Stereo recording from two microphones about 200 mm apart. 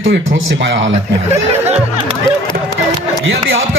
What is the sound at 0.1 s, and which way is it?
Speech, 60° right (ahead or behind).